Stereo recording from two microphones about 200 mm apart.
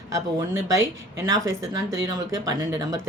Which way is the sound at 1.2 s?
20° right (ahead or behind).